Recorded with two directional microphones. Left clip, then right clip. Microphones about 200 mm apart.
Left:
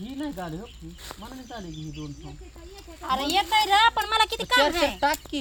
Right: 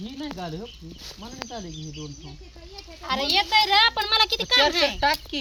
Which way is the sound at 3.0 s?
35° left (ahead or behind).